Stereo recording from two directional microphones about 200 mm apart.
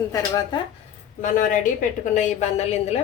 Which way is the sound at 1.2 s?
40° left (ahead or behind).